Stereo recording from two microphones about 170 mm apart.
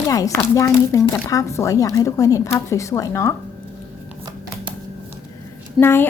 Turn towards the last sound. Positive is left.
turn(degrees=15)  # may be behind; listen again after turning